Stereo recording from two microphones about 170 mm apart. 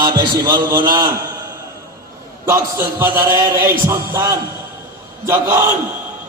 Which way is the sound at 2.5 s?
15° right (ahead or behind).